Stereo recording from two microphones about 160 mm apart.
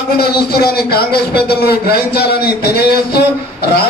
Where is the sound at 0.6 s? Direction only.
80° left.